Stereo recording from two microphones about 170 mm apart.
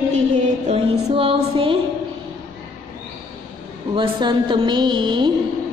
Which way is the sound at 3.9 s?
30° right (ahead or behind).